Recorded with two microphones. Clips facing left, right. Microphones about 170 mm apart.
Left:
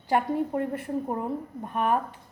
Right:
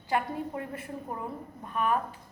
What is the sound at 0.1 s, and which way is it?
A woman's voice, 50° left (ahead or behind).